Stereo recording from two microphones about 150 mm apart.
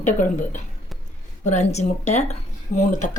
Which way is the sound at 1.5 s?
50° left (ahead or behind).